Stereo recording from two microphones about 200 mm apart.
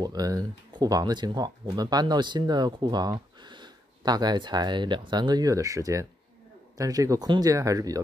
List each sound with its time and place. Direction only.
0.0 s speech: 20° right (ahead or behind)